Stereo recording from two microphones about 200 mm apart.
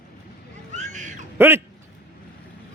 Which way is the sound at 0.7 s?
35° right (ahead or behind).